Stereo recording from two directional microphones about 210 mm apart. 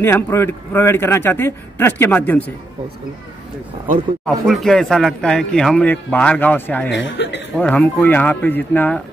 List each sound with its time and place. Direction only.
0.0 s a man's voice: 10° left (ahead or behind)
4.3 s speech: centre (ahead or behind)
6.9 s speech: 60° left (ahead or behind)
7.5 s a man's voice: 5° left (ahead or behind)